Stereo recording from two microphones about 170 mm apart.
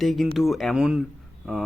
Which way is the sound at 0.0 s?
Centre (ahead or behind).